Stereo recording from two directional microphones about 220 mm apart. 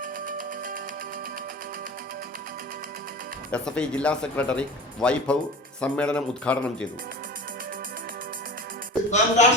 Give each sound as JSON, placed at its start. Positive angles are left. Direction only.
{"t": 0.3, "sound": "a sound", "side_deg": -40}
{"t": 3.5, "sound": "speech", "side_deg": 5}
{"t": 9.0, "sound": "speech", "side_deg": 30}